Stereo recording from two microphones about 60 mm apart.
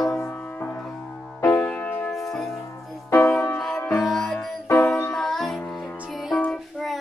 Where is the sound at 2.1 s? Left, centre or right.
Centre.